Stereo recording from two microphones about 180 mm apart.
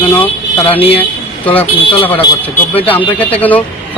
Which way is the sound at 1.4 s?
10° left (ahead or behind).